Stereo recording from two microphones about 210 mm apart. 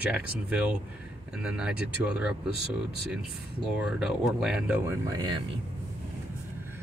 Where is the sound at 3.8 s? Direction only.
5° right (ahead or behind).